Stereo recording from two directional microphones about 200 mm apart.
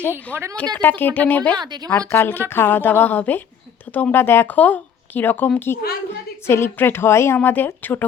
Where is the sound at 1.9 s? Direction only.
10° left (ahead or behind).